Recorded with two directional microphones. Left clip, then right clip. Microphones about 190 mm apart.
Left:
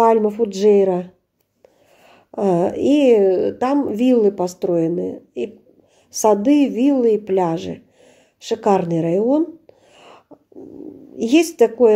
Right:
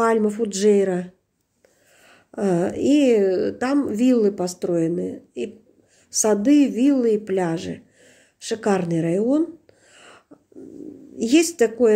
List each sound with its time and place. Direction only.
0.0 s a woman's voice: 10° left (ahead or behind)